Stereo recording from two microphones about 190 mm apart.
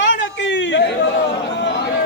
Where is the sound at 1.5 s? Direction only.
70° left (ahead or behind).